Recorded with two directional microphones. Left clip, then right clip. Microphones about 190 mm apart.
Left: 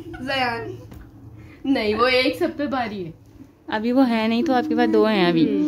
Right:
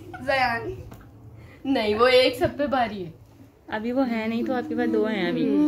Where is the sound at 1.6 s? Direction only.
25° left (ahead or behind).